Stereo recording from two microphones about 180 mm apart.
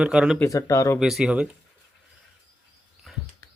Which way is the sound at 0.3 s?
20° left (ahead or behind).